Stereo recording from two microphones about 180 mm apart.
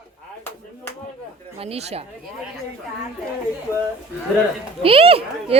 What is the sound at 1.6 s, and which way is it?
Speech, 35° right (ahead or behind).